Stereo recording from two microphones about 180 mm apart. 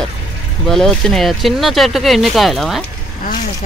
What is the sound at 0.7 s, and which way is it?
Speech, centre (ahead or behind).